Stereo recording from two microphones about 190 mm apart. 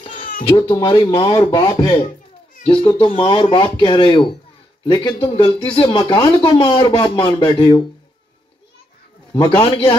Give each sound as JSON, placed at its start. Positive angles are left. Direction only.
{"t": 0.4, "sound": "speech", "side_deg": 25}
{"t": 9.3, "sound": "speech", "side_deg": 30}